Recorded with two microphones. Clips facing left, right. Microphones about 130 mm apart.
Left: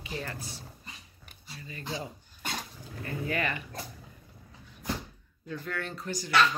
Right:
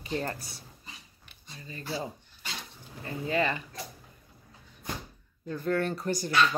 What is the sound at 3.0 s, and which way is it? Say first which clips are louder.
Speech: right 3 dB; 25° right (ahead or behind).